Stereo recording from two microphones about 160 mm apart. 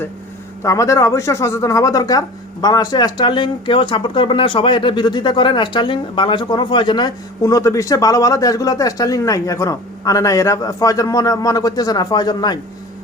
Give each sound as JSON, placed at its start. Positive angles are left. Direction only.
{"t": 0.6, "sound": "speech", "side_deg": 20}